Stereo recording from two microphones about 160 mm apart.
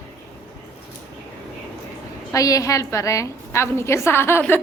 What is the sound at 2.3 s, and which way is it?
A woman's voice, 20° left (ahead or behind).